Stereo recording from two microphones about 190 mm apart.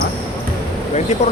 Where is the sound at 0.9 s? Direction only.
35° left (ahead or behind).